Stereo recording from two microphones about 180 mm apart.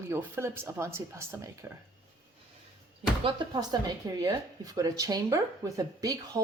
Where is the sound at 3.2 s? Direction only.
25° right (ahead or behind).